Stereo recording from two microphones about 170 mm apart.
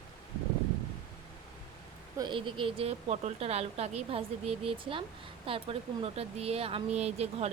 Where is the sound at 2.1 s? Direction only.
25° right (ahead or behind).